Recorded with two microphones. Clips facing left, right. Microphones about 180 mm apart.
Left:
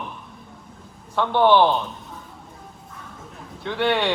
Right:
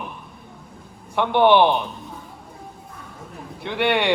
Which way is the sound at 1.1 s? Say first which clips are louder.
Right 1 dB; 15° right (ahead or behind).